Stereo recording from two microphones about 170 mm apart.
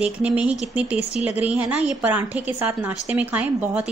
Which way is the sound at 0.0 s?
5° right (ahead or behind).